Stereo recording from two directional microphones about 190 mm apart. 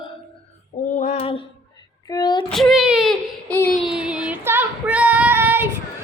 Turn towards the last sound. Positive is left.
turn(degrees=-10)  # may be behind; listen again after turning